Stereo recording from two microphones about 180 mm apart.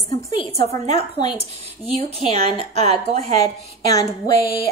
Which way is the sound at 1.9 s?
35° right (ahead or behind).